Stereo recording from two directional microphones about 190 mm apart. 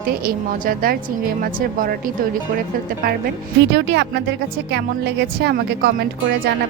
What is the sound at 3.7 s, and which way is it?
Speech, 65° right (ahead or behind).